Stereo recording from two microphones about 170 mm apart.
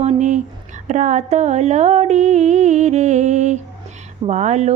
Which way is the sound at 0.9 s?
45° right (ahead or behind).